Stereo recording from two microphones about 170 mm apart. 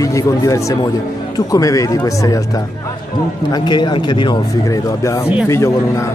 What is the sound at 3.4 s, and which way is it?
Speech, 25° left (ahead or behind).